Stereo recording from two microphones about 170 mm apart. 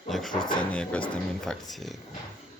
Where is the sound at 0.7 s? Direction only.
5° left (ahead or behind).